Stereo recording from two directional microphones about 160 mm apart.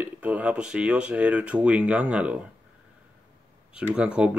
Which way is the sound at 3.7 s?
5° right (ahead or behind).